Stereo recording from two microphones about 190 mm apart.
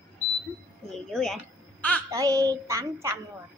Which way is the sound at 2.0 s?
15° right (ahead or behind).